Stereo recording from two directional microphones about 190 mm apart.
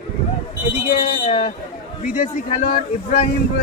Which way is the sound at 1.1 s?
35° left (ahead or behind).